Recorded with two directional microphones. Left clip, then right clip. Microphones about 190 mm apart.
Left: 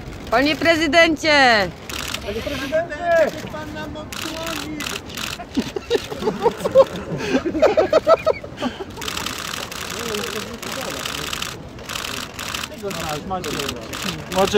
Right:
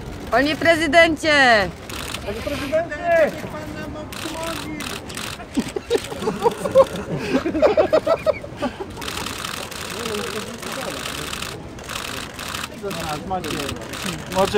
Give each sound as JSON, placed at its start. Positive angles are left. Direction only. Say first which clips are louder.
{"t": 0.3, "sound": "speech", "louder": "even", "side_deg": 15}
{"t": 2.0, "sound": "speech", "louder": "left 3 dB", "side_deg": 40}
{"t": 4.2, "sound": "vehicle", "louder": "left 1 dB", "side_deg": 45}
{"t": 5.9, "sound": "speech", "louder": "left 1 dB", "side_deg": 40}
{"t": 7.9, "sound": "a sound", "louder": "left 3 dB", "side_deg": 40}
{"t": 9.9, "sound": "speech", "louder": "even", "side_deg": 45}
{"t": 12.5, "sound": "speech", "louder": "left 1 dB", "side_deg": 45}